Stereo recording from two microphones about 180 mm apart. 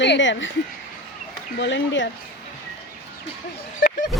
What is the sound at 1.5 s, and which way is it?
Speech, 85° left.